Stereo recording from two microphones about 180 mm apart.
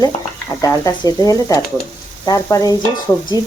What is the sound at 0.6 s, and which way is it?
Speech, 15° left (ahead or behind).